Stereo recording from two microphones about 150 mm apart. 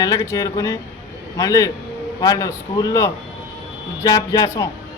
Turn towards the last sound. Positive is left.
turn(degrees=20)  # may be behind; listen again after turning